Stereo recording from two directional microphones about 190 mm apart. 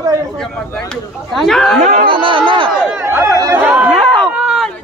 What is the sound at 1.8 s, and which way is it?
Speech, 45° right (ahead or behind).